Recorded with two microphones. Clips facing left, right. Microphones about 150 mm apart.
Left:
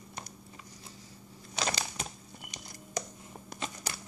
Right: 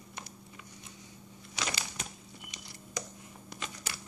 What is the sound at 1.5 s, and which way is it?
Crumpling, 40° left (ahead or behind).